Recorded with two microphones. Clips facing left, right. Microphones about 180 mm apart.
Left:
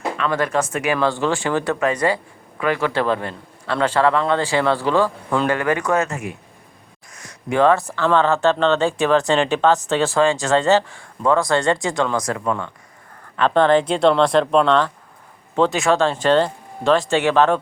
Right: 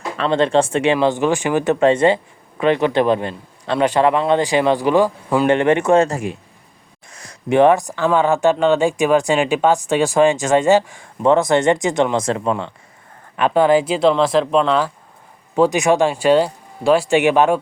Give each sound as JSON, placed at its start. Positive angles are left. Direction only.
{"t": 0.2, "sound": "speech", "side_deg": -25}
{"t": 0.9, "sound": "speech", "side_deg": -15}
{"t": 5.5, "sound": "speech", "side_deg": -25}
{"t": 7.1, "sound": "a sound", "side_deg": -30}
{"t": 7.6, "sound": "speech", "side_deg": -15}
{"t": 13.3, "sound": "speech", "side_deg": -10}